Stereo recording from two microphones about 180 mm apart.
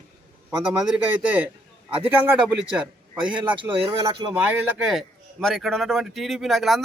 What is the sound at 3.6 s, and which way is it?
Speech, 25° right (ahead or behind).